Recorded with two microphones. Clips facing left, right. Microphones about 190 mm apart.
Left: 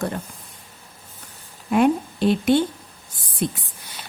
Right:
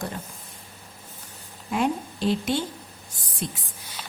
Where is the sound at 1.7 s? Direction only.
60° left (ahead or behind).